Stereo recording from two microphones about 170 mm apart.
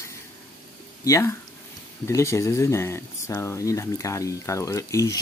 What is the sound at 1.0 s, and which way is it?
Speech, 15° left (ahead or behind).